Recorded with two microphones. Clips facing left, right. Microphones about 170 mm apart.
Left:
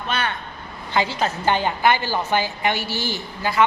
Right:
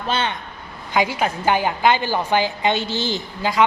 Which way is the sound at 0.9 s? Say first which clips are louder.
Right 2 dB; 15° right (ahead or behind).